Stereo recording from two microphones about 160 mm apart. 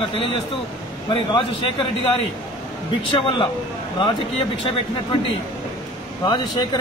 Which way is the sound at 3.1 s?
35° left (ahead or behind).